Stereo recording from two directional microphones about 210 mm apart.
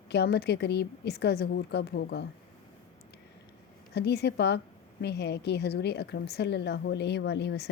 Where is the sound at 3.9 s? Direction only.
50° left (ahead or behind).